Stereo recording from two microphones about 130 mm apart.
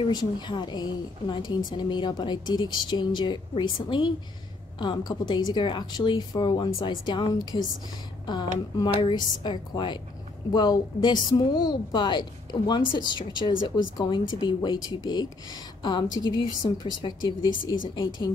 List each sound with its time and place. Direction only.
0.0 s a woman's voice: 35° left (ahead or behind)